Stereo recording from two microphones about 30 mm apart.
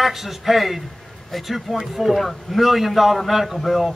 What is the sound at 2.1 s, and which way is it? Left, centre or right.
Speech, centre.